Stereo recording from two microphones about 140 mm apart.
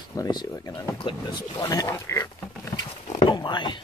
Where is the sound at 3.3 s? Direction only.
35° left (ahead or behind).